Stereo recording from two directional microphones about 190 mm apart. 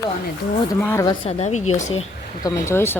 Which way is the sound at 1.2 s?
35° left (ahead or behind).